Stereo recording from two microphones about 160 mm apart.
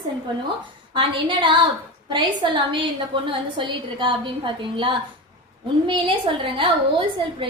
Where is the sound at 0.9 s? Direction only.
30° right (ahead or behind).